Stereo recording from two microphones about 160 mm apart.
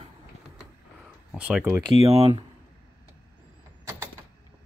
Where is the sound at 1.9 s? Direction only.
35° right (ahead or behind).